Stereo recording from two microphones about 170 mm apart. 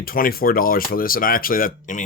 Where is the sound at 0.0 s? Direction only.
60° left (ahead or behind).